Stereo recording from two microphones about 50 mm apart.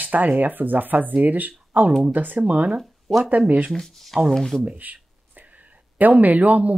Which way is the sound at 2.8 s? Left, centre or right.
Centre.